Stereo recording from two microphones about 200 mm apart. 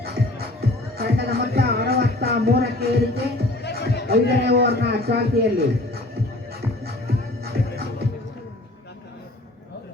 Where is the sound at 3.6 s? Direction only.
55° left (ahead or behind).